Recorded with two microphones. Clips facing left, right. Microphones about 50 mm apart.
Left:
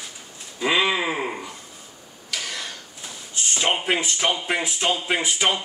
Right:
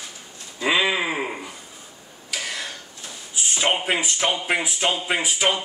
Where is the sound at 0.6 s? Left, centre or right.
Centre.